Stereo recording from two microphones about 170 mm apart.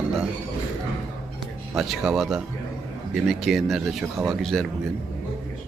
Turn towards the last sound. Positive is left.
turn(degrees=0)  # may be behind; listen again after turning